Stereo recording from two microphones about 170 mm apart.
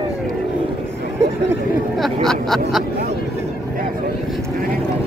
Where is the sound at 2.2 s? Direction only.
Centre (ahead or behind).